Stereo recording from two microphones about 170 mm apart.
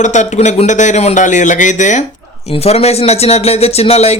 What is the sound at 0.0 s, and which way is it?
Speech, 45° left (ahead or behind).